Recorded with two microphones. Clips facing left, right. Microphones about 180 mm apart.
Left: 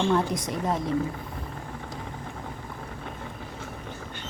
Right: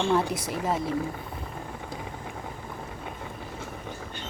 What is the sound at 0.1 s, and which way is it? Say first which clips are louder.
Speech: even; 5° right (ahead or behind).